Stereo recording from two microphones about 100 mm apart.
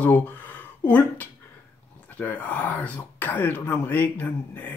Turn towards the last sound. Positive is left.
turn(degrees=15)  # may be behind; listen again after turning